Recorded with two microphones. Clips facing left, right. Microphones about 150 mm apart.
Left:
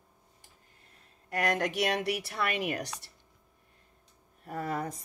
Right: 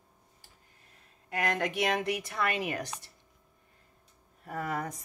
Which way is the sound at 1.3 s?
40° left (ahead or behind).